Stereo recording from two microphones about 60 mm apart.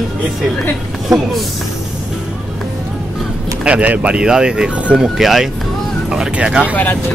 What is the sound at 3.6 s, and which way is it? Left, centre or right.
Speech, right.